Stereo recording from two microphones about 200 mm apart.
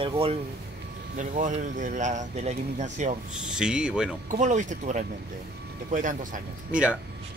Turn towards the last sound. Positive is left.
turn(degrees=-5)  # may be behind; listen again after turning